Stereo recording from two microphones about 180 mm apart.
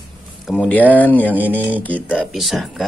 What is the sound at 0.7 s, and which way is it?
Speech, 10° left (ahead or behind).